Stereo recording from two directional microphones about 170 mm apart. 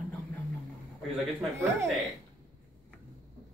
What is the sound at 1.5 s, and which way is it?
Speech, 15° right (ahead or behind).